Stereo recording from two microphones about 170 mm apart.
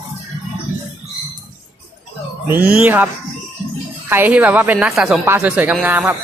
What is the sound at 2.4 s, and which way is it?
Speech, 10° right (ahead or behind).